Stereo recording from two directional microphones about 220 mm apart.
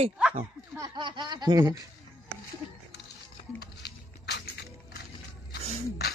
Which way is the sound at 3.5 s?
50° left (ahead or behind).